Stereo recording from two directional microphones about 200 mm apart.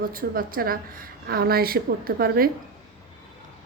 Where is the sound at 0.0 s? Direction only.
45° right (ahead or behind).